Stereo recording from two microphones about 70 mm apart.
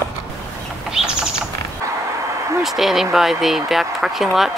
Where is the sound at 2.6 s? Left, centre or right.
Centre.